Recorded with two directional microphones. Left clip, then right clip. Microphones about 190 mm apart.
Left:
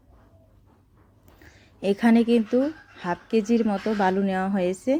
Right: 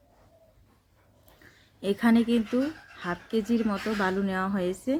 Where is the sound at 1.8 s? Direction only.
15° left (ahead or behind).